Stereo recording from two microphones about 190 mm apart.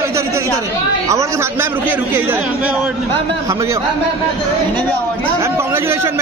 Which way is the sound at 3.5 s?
15° right (ahead or behind).